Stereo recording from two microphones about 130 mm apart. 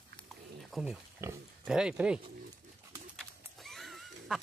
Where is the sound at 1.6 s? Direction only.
5° right (ahead or behind).